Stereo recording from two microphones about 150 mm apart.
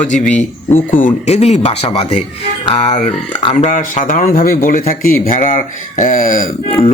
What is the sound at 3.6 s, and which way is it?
Speech, 60° left (ahead or behind).